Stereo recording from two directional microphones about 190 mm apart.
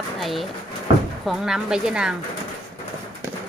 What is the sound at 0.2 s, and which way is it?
A woman's voice, centre (ahead or behind).